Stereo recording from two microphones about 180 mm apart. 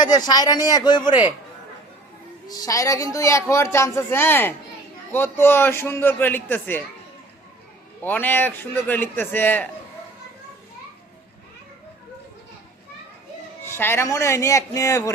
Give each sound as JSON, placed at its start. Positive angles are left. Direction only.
{"t": 0.0, "sound": "speech", "side_deg": 25}
{"t": 2.5, "sound": "a man's voice", "side_deg": 20}
{"t": 8.0, "sound": "a man's voice", "side_deg": 10}
{"t": 13.7, "sound": "a man's voice", "side_deg": 10}